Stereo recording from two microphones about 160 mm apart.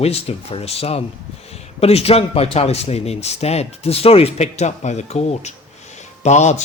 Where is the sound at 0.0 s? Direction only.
40° left (ahead or behind).